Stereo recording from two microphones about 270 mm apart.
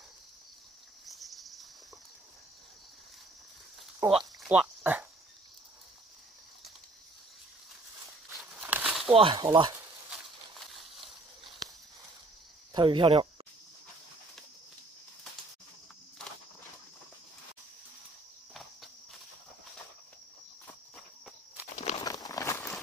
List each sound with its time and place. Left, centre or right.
1.0 s cricket: centre
4.0 s speech: centre
4.4 s a sound: centre
8.5 s crumpling: centre
9.1 s speech: centre
10.7 s a sound: centre
12.7 s speech: centre
20.6 s walk: centre
21.7 s horse: left
22.0 s horse: centre